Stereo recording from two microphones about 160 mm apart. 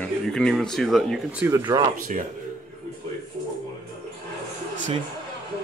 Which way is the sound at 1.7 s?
20° right (ahead or behind).